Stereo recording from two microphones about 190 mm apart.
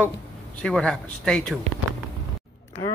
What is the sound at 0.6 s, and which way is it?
Speech, 5° left (ahead or behind).